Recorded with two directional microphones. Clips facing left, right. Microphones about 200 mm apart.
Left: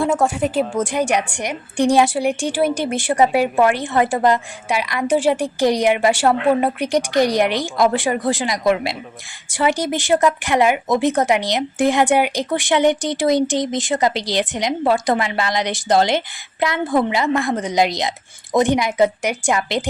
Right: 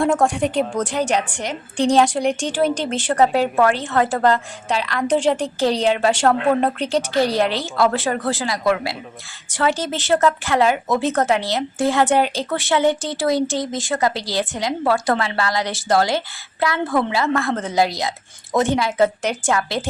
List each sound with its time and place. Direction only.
0.0 s a woman's voice: centre (ahead or behind); by 19.9 s 20° left (ahead or behind)